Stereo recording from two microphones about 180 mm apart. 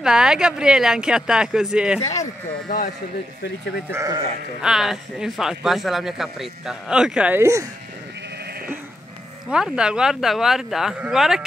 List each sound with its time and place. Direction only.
0.0 s speech: 5° right (ahead or behind)
3.9 s speech: 15° right (ahead or behind)
4.6 s speech: centre (ahead or behind)
9.5 s speech: 5° right (ahead or behind)